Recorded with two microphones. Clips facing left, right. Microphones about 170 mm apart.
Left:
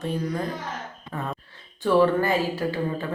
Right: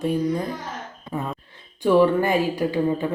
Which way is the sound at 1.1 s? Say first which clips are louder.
Right 3 dB; 10° right (ahead or behind).